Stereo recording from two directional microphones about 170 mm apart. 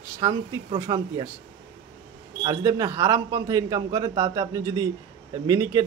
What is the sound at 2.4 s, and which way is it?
A man's voice, 20° right (ahead or behind).